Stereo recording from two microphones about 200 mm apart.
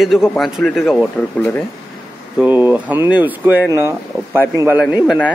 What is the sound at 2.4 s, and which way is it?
Speech, 10° right (ahead or behind).